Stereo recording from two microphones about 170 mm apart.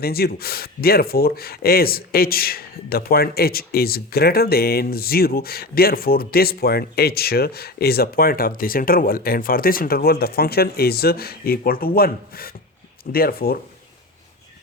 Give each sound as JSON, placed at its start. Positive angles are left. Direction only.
{"t": 0.0, "sound": "speech", "side_deg": 65}